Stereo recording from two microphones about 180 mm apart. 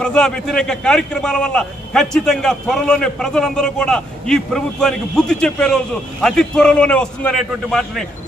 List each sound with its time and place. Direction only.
0.0 s a man's voice: 5° left (ahead or behind)